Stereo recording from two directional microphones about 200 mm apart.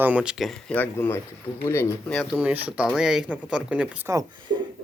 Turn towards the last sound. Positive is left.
turn(degrees=-15)  # may be behind; listen again after turning